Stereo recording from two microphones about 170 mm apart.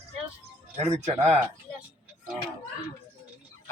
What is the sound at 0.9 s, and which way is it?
Speech, 40° right (ahead or behind).